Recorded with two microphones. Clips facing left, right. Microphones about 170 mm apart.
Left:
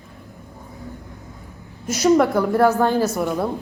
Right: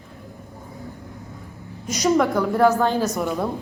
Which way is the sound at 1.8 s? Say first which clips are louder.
Left 3 dB; 5° left (ahead or behind).